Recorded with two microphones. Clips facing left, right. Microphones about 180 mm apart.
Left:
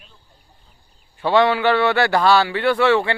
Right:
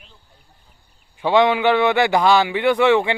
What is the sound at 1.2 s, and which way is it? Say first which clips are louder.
A man's voice: right 1 dB; 15° right (ahead or behind).